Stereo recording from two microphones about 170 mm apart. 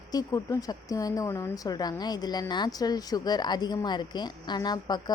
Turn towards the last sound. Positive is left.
turn(degrees=25)  # may be behind; listen again after turning